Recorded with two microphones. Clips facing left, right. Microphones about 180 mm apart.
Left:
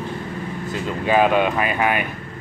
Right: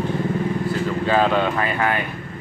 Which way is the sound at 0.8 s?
15° left (ahead or behind).